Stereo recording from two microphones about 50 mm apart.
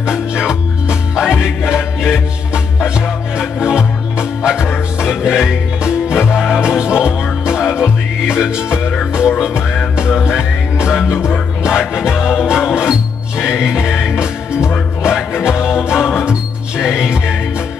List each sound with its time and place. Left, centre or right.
0.0 s music: centre